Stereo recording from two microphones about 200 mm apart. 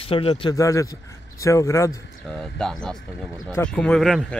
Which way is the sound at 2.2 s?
Centre (ahead or behind).